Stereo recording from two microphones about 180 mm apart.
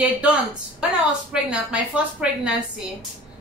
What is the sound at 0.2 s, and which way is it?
A woman's voice, 5° right (ahead or behind).